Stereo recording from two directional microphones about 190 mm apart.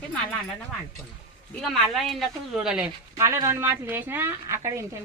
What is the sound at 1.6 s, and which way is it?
Speech, centre (ahead or behind).